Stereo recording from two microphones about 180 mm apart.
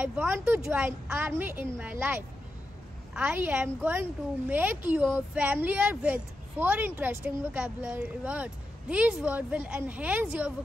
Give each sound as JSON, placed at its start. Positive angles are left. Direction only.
{"t": 0.0, "sound": "speech", "side_deg": -5}